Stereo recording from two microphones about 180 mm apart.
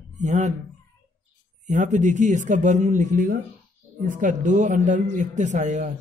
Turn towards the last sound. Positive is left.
turn(degrees=-40)  # may be behind; listen again after turning